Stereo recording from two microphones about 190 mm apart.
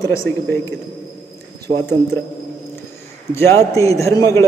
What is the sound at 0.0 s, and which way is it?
Speech, 15° left (ahead or behind).